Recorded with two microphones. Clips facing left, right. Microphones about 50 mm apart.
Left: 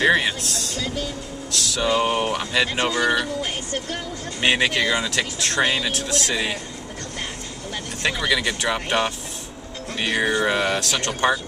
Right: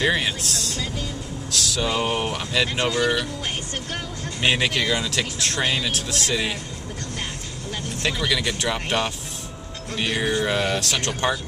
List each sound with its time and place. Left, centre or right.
0.0 s speech: centre
4.4 s speech: centre
8.0 s speech: centre
10.1 s mantra: left
10.4 s speech: centre